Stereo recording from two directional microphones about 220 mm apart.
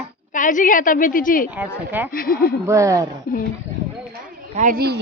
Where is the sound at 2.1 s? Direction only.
40° left (ahead or behind).